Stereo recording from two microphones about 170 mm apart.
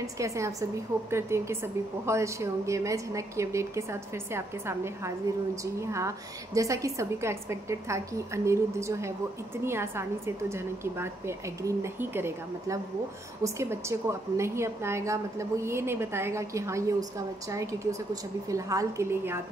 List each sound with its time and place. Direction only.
0.0 s a woman's voice: 20° right (ahead or behind)